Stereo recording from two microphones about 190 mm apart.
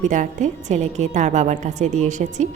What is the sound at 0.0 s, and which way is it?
A woman's voice, 40° right (ahead or behind).